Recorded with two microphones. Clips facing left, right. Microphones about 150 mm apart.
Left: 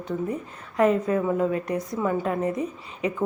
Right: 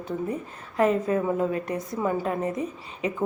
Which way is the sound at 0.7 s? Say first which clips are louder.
Left 1 dB; 30° right (ahead or behind).